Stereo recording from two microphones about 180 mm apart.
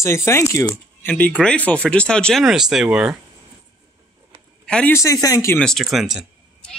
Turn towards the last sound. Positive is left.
turn(degrees=0)  # may be behind; listen again after turning